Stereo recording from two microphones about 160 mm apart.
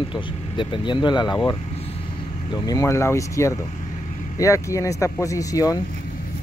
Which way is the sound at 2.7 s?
20° left (ahead or behind).